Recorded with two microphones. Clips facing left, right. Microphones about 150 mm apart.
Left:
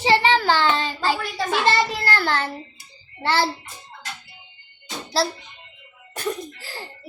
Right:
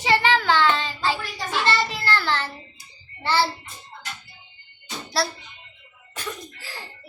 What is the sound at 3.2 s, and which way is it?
Speech, 55° left (ahead or behind).